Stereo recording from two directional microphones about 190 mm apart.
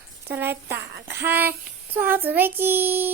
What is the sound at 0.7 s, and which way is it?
Child singing, 55° right (ahead or behind).